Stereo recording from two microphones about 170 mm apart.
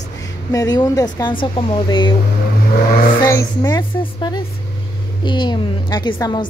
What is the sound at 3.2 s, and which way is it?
A woman's voice, 20° left (ahead or behind).